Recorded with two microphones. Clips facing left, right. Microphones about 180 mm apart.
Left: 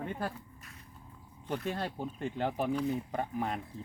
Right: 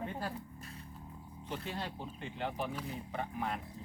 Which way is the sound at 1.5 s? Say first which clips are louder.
Left 6 dB; 50° left (ahead or behind).